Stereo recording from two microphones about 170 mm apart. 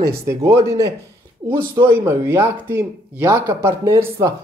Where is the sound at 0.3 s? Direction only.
15° right (ahead or behind).